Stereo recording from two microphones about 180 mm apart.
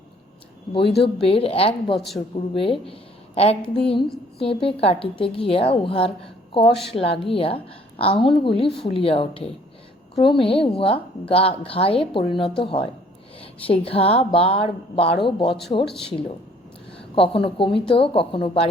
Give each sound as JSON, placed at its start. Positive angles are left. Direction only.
{"t": 0.7, "sound": "a woman's voice", "side_deg": 30}
{"t": 17.2, "sound": "a woman's voice", "side_deg": 30}